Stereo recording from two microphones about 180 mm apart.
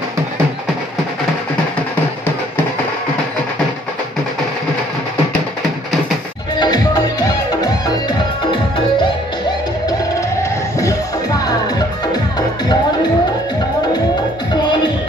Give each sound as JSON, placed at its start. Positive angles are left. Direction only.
{"t": 6.6, "sound": "music", "side_deg": 20}
{"t": 10.8, "sound": "music", "side_deg": 20}